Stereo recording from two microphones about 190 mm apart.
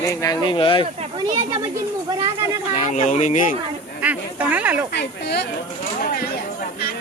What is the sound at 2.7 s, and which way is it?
Speech, 40° left (ahead or behind).